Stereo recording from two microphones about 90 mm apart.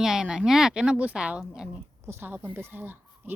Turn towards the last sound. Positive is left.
turn(degrees=-20)  # may be behind; listen again after turning